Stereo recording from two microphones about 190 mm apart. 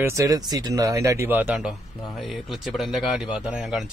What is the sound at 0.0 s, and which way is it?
A man's voice, 15° right (ahead or behind).